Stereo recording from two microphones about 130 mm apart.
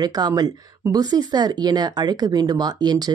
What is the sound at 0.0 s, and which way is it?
Speech, 30° right (ahead or behind).